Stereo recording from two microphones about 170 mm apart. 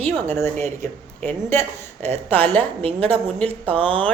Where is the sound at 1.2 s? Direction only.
15° left (ahead or behind).